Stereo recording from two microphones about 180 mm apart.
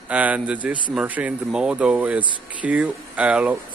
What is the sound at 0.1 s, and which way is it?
Speech, 10° right (ahead or behind).